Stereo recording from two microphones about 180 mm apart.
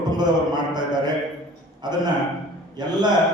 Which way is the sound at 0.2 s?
25° right (ahead or behind).